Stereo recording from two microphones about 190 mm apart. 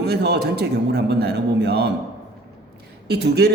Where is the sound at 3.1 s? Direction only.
60° right (ahead or behind).